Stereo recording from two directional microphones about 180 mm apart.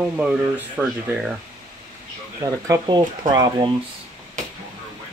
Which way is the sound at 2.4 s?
20° right (ahead or behind).